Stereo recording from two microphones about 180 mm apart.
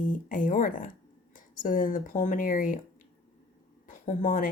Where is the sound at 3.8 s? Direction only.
45° left (ahead or behind).